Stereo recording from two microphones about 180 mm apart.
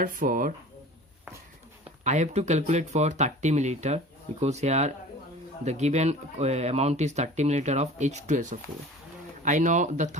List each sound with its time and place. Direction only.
0.0 s speech: 50° right (ahead or behind)
2.0 s speech: 40° right (ahead or behind)